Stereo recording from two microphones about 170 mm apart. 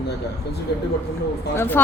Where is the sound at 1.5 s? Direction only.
15° left (ahead or behind).